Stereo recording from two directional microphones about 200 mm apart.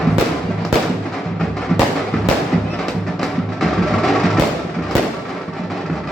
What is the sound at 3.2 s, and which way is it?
Music, centre (ahead or behind).